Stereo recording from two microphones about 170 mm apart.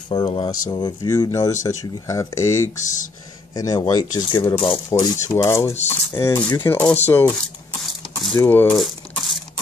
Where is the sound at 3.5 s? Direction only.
20° left (ahead or behind).